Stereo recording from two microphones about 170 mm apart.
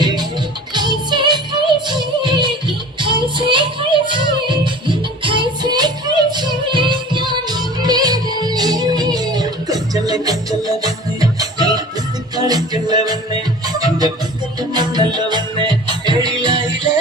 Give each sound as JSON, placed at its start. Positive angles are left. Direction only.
{"t": 0.7, "sound": "music", "side_deg": -25}